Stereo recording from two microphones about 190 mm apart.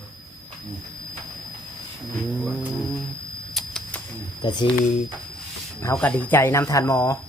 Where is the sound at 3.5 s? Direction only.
5° left (ahead or behind).